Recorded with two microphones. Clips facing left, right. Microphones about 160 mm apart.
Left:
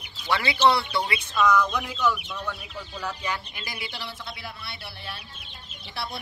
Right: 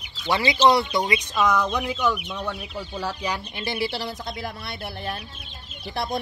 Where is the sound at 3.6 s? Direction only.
35° right (ahead or behind).